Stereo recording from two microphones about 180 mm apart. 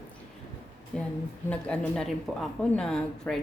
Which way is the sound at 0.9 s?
5° left (ahead or behind).